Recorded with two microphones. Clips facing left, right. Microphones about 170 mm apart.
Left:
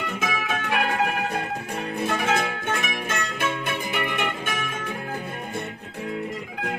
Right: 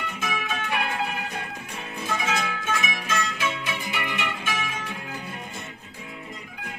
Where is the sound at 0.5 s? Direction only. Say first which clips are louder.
Left 5 dB; 65° left (ahead or behind).